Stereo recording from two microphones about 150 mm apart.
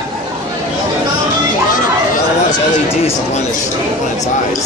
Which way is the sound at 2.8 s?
40° left (ahead or behind).